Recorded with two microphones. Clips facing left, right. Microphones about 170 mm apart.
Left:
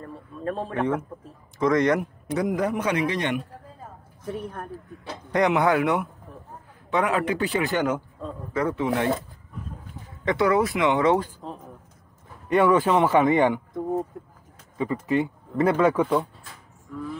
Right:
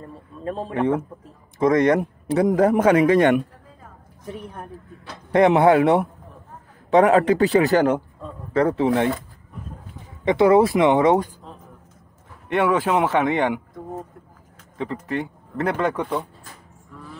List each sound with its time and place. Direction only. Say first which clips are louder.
0.0 s a sound: even; 20° right (ahead or behind)
0.7 s speech: right 6 dB; 20° right (ahead or behind); by 3.4 s 50° right (ahead or behind)
5.3 s speech: right 6 dB; 25° right (ahead or behind)
10.2 s speech: right 6 dB; 25° right (ahead or behind)
12.4 s speech: left 1 dB; 5° right (ahead or behind)
14.8 s speech: left 3 dB; 5° left (ahead or behind)